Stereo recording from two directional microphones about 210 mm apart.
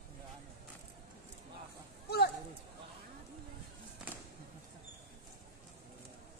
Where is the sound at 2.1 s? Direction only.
50° left (ahead or behind).